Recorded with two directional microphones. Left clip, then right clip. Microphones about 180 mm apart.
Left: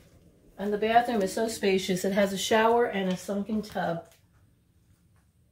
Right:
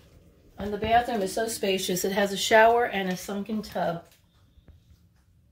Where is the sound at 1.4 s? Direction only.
50° right (ahead or behind); by 3.1 s 35° right (ahead or behind).